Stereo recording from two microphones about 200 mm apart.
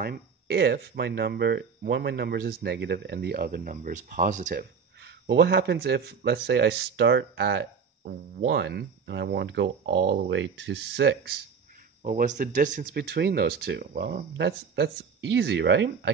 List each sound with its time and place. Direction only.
0.0 s speech: 50° right (ahead or behind)
5.0 s speech: 60° right (ahead or behind)
12.0 s speech: 35° right (ahead or behind); by 16.1 s 60° right (ahead or behind)